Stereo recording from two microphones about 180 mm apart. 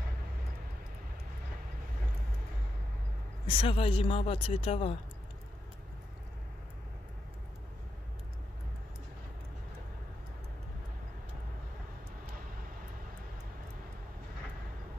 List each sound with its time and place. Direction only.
3.4 s speech: 30° left (ahead or behind)